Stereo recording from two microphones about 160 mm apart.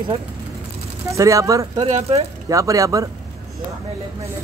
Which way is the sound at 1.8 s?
40° right (ahead or behind).